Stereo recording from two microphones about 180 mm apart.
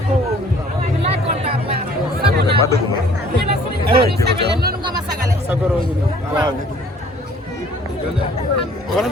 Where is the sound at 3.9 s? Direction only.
60° right (ahead or behind).